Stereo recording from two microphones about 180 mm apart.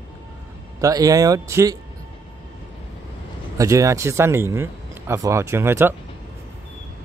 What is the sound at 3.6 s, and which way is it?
Speech, 20° right (ahead or behind).